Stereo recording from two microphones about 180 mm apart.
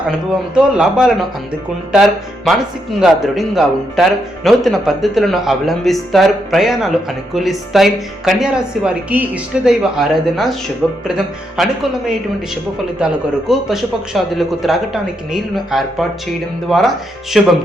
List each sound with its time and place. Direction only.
0.5 s speech: 5° right (ahead or behind)
13.5 s speech: centre (ahead or behind)